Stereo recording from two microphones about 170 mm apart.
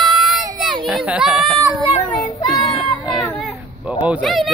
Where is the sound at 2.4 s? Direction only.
25° left (ahead or behind).